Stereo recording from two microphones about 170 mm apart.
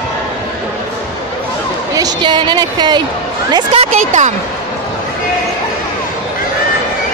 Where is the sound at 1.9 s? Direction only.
25° right (ahead or behind).